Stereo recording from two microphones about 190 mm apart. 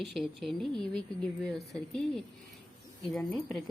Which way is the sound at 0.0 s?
Centre (ahead or behind).